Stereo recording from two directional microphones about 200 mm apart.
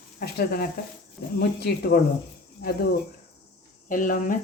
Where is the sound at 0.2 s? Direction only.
50° left (ahead or behind).